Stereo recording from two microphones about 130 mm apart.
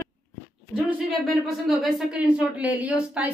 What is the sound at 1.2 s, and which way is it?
Speech, centre (ahead or behind).